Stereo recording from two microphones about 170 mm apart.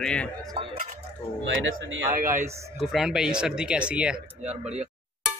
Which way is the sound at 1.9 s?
55° right (ahead or behind).